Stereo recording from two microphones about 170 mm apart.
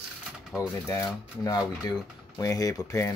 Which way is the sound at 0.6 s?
20° left (ahead or behind).